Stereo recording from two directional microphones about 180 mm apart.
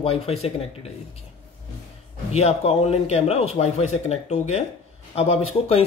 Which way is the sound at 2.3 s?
35° left (ahead or behind).